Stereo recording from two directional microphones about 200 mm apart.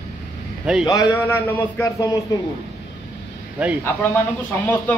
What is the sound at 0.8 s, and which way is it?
A man's voice, 15° left (ahead or behind).